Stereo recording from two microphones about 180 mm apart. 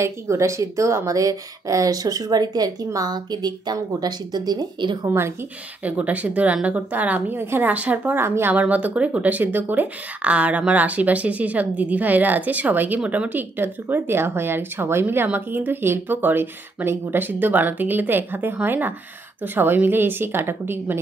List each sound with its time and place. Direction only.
0.0 s speech: 15° right (ahead or behind)
5.9 s speech: 10° right (ahead or behind)